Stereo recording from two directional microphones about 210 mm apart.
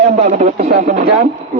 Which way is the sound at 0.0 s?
35° right (ahead or behind).